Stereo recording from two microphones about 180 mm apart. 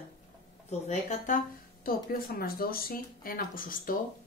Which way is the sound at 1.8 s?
55° left (ahead or behind).